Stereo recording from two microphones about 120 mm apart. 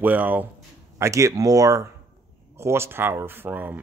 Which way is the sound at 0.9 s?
25° right (ahead or behind).